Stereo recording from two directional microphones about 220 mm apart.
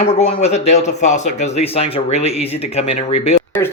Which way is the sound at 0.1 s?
30° left (ahead or behind).